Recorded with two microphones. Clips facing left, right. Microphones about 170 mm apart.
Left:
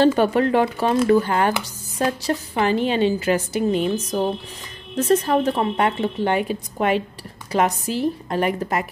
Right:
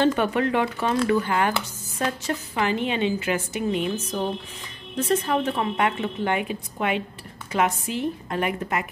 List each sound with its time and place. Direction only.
0.0 s a woman's voice: 35° left (ahead or behind)